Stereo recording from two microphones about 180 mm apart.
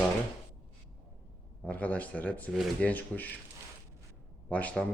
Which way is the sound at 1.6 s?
10° left (ahead or behind).